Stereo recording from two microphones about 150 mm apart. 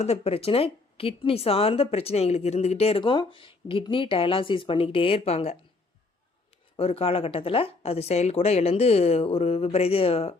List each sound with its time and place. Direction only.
0.0 s a woman's voice: 40° left (ahead or behind)
6.7 s a woman's voice: 40° left (ahead or behind)